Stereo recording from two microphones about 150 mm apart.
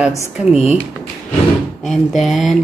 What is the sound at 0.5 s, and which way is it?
Speech, 45° left (ahead or behind).